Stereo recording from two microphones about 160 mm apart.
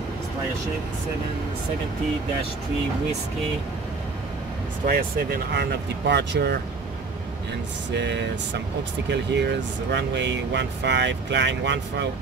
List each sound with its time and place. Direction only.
4.8 s speech: 70° right (ahead or behind); by 6.6 s 90° right
7.9 s speech: 90° right